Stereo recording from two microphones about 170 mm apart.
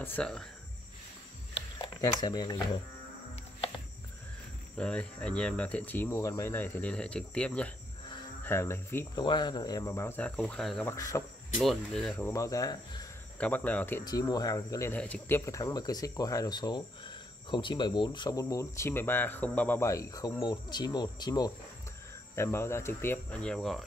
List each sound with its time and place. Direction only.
0.0 s speech: 10° left (ahead or behind)
1.8 s speech: 25° left (ahead or behind)
4.7 s speech: 5° left (ahead or behind)
9.2 s speech: 25° left (ahead or behind); by 10.9 s 5° left (ahead or behind)
10.9 s speech: 20° left (ahead or behind)
11.6 s speech: centre (ahead or behind)
12.3 s speech: 20° left (ahead or behind)
13.4 s speech: 10° left (ahead or behind)
14.0 s speech: 25° left (ahead or behind)
15.0 s speech: 5° left (ahead or behind)
23.4 s speech: centre (ahead or behind)